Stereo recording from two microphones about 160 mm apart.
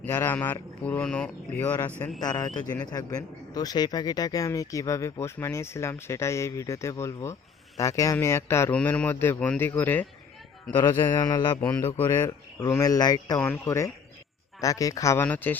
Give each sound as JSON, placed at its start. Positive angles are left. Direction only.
{"t": 0.0, "sound": "a man's voice", "side_deg": 15}
{"t": 2.2, "sound": "a man's voice", "side_deg": 25}
{"t": 11.0, "sound": "a man's voice", "side_deg": 25}
{"t": 11.6, "sound": "a man's voice", "side_deg": 15}